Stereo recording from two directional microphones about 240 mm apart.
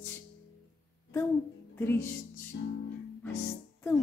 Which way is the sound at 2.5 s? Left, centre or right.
Left.